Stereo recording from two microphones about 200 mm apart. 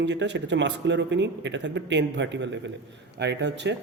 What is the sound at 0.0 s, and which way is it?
A man's voice, 65° right (ahead or behind).